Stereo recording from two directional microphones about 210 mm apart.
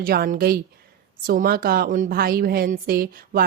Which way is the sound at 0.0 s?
45° right (ahead or behind).